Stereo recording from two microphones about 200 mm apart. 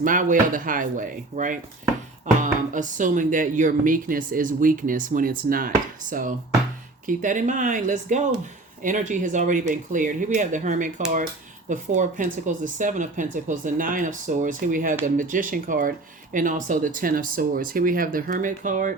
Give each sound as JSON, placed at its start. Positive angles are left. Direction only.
{"t": 0.0, "sound": "speech", "side_deg": -40}